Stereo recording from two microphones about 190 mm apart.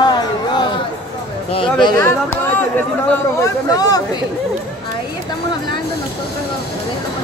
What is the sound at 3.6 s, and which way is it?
Speech, 20° left (ahead or behind).